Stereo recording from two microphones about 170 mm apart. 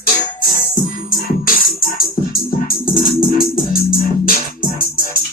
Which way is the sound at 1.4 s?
60° left (ahead or behind).